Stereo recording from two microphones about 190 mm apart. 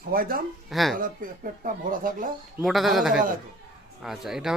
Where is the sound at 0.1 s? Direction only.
50° right (ahead or behind).